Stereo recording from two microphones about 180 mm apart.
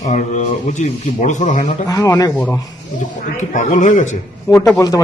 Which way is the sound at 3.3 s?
40° left (ahead or behind).